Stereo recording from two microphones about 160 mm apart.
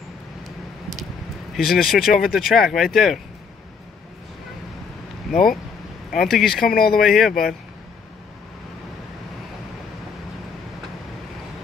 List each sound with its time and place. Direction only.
1.5 s speech: centre (ahead or behind)
6.1 s speech: centre (ahead or behind)
6.7 s speech: 70° left (ahead or behind)
7.0 s speech: centre (ahead or behind)